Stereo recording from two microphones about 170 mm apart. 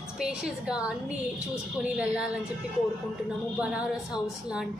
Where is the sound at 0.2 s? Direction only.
5° right (ahead or behind).